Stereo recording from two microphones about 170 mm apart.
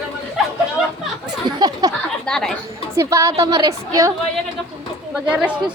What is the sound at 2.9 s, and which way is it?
A woman's voice, 20° right (ahead or behind).